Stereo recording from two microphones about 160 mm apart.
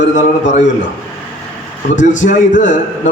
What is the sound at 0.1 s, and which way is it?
Speech, 50° left (ahead or behind).